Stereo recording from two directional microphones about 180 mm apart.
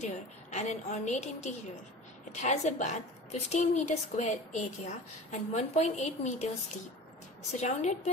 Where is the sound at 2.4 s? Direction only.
40° left (ahead or behind).